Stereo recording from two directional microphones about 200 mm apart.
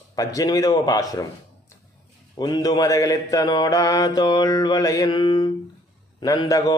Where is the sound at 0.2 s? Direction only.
20° left (ahead or behind).